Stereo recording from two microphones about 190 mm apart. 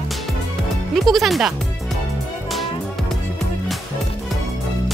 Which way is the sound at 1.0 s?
Centre (ahead or behind).